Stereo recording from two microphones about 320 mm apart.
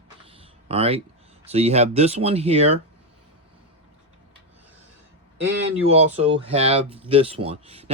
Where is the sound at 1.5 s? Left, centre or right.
Centre.